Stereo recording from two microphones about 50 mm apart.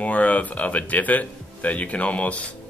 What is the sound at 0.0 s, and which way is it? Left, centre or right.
Speech, left.